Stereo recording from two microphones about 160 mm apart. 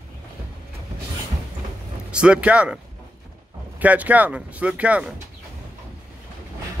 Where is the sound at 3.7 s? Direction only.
10° right (ahead or behind).